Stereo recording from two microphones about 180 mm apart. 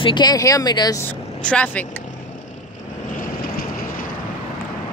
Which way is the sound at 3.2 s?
55° left (ahead or behind).